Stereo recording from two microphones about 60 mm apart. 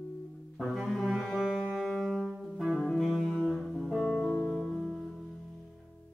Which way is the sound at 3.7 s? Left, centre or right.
Centre.